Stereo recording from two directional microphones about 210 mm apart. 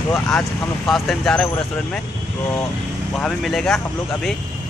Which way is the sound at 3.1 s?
Centre (ahead or behind).